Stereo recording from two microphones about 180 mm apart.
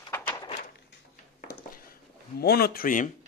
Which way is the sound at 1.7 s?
55° left (ahead or behind).